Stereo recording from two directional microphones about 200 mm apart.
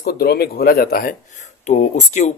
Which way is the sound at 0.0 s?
50° left (ahead or behind).